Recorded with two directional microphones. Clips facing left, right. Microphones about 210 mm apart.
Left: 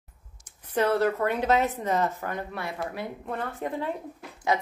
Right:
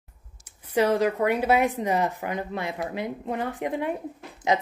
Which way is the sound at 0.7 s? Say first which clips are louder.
Right 2 dB; 15° right (ahead or behind).